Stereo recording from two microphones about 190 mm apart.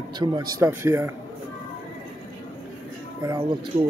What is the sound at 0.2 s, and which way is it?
Speech, 20° right (ahead or behind).